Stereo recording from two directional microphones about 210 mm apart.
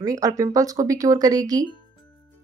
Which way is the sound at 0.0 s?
15° right (ahead or behind).